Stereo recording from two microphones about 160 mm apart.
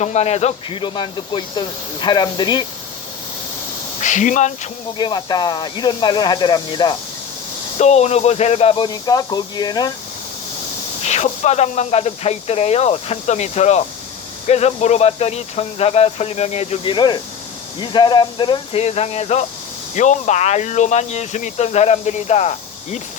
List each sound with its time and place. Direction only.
0.0 s speech: 45° left (ahead or behind)
0.8 s speech: 30° left (ahead or behind)
4.0 s speech: 50° left (ahead or behind)
4.9 s speech: 25° left (ahead or behind)
7.8 s speech: 45° left (ahead or behind); by 9.9 s 25° left (ahead or behind)
11.0 s speech: 45° left (ahead or behind)